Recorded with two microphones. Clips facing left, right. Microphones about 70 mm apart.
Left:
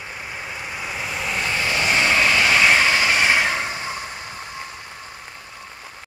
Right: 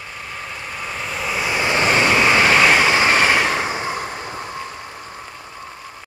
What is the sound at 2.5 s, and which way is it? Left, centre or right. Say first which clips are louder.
Vehicle: right 3 dB; right.